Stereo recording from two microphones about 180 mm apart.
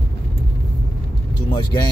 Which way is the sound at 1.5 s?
25° left (ahead or behind).